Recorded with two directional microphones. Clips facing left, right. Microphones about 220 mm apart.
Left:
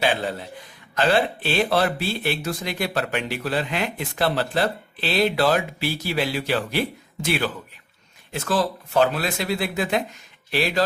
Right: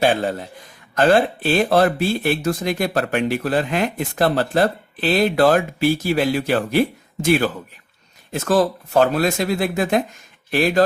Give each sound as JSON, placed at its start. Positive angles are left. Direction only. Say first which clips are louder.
{"t": 0.0, "sound": "speech", "louder": "right 5 dB", "side_deg": -45}